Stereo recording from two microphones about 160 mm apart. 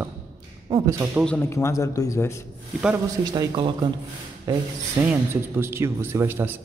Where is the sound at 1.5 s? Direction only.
20° left (ahead or behind).